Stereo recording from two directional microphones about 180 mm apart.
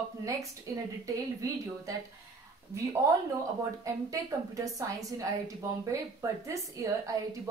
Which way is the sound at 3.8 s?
20° right (ahead or behind).